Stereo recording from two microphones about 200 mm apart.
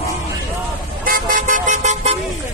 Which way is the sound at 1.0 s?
45° right (ahead or behind).